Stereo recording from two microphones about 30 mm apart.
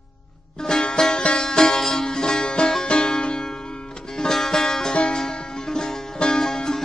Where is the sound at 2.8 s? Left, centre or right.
Left.